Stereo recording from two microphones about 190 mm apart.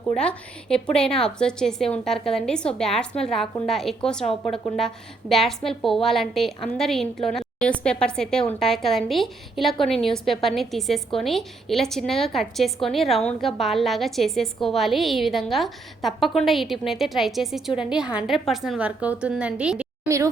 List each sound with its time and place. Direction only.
0.1 s a woman's voice: 5° left (ahead or behind); by 20.3 s 15° right (ahead or behind)